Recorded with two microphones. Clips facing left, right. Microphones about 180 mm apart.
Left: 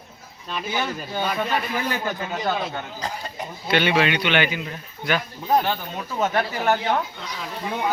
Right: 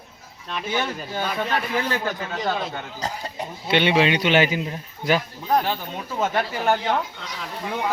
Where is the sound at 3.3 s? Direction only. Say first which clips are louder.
Right 1 dB; 25° right (ahead or behind).